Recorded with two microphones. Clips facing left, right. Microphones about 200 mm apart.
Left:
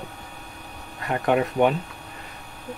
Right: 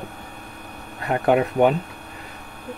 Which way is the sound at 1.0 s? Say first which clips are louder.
Right 3 dB; 30° right (ahead or behind).